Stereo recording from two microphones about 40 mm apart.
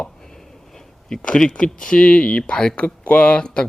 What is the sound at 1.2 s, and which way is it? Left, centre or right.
A man's voice, left.